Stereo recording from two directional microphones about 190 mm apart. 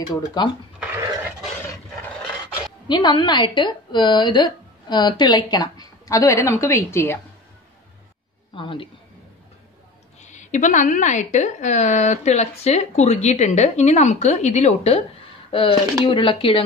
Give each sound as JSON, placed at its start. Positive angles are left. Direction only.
{"t": 0.1, "sound": "a woman's voice", "side_deg": 20}
{"t": 0.7, "sound": "a sound", "side_deg": -10}
{"t": 2.9, "sound": "a woman's voice", "side_deg": 25}
{"t": 8.5, "sound": "a woman's voice", "side_deg": 25}
{"t": 10.2, "sound": "a woman's voice", "side_deg": 40}